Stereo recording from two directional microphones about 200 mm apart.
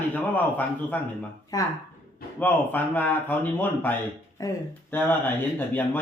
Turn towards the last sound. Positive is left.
turn(degrees=10)  # may be behind; listen again after turning